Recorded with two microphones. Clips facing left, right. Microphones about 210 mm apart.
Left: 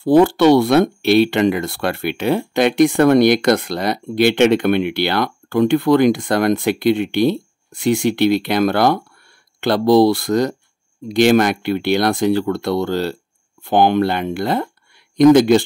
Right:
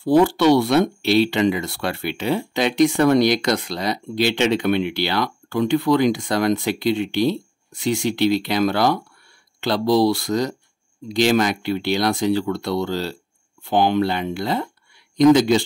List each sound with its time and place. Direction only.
0.0 s speech: 55° left (ahead or behind)